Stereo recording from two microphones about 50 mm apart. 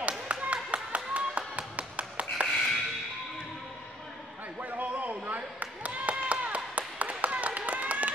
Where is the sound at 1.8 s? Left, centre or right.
Right.